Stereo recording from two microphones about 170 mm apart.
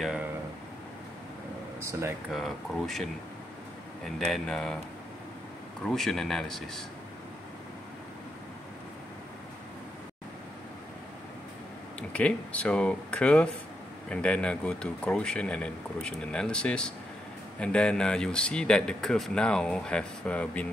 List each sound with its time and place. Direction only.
1.8 s speech: 15° right (ahead or behind)
2.3 s speech: centre (ahead or behind)
5.9 s speech: centre (ahead or behind)
12.1 s speech: 5° left (ahead or behind)